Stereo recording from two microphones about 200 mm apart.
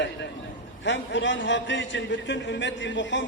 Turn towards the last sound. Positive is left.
turn(degrees=65)  # may be behind; listen again after turning